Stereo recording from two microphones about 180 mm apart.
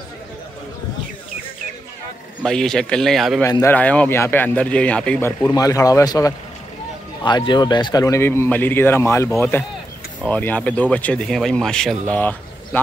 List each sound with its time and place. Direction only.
2.4 s a man's voice: 5° left (ahead or behind)
3.4 s speech: 15° left (ahead or behind)